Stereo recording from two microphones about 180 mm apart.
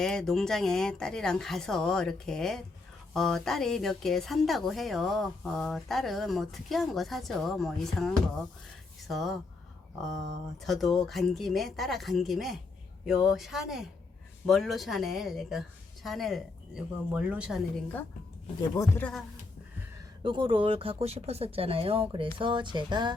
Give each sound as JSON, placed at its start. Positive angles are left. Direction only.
{"t": 0.0, "sound": "a woman's voice", "side_deg": 5}
{"t": 10.7, "sound": "a woman's voice", "side_deg": 0}
{"t": 18.8, "sound": "speech", "side_deg": 10}
{"t": 20.2, "sound": "speech", "side_deg": -25}